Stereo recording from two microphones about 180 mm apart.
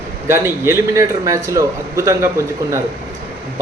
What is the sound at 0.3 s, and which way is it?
Speech, 15° right (ahead or behind).